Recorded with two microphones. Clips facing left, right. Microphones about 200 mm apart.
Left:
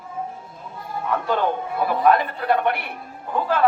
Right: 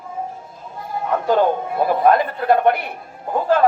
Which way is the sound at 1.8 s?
45° right (ahead or behind).